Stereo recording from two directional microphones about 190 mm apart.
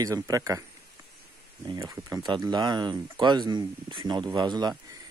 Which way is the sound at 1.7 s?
15° right (ahead or behind).